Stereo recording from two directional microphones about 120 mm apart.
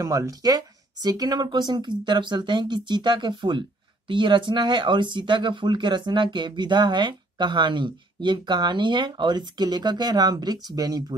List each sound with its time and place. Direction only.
0.0 s speech: 30° right (ahead or behind)